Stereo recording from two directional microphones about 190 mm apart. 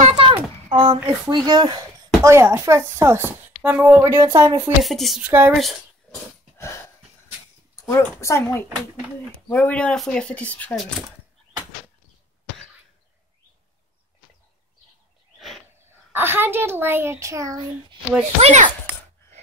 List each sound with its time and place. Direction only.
0.2 s a sound: 25° right (ahead or behind)
0.9 s speech: 20° right (ahead or behind)
4.8 s speech: centre (ahead or behind)
7.9 s speech: 15° left (ahead or behind)
15.8 s speech: 10° right (ahead or behind)
18.4 s a child's voice: 35° right (ahead or behind)